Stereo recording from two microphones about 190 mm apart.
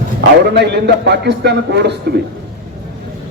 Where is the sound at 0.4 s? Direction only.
60° right (ahead or behind).